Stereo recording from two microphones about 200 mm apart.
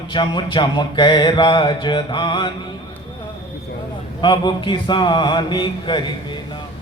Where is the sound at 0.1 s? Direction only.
25° left (ahead or behind).